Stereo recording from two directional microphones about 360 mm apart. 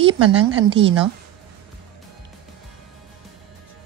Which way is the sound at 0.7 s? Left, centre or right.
Centre.